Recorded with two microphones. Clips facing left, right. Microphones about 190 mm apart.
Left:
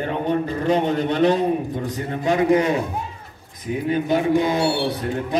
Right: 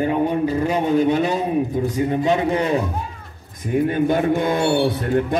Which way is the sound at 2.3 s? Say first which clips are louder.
Left 6 dB; 30° right (ahead or behind).